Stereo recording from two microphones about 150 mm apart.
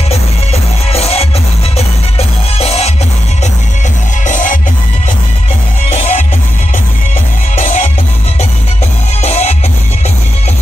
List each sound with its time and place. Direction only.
0.5 s music: 45° left (ahead or behind)
4.3 s music: 60° left (ahead or behind)
5.9 s music: 45° left (ahead or behind)
7.5 s music: 50° left (ahead or behind)
9.2 s music: 45° left (ahead or behind)